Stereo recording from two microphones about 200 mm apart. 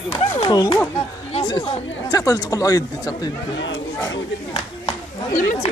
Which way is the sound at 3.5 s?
65° left (ahead or behind).